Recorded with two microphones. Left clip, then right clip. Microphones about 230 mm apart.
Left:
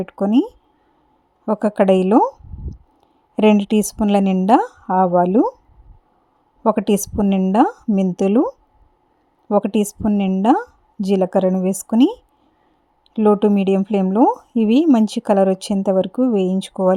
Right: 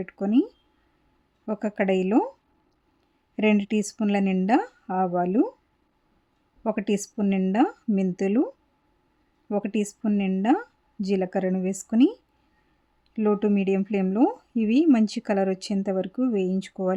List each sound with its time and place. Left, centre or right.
0.3 s speech: centre
1.5 s speech: left
3.3 s speech: left
6.6 s speech: left
11.9 s speech: centre
13.1 s speech: left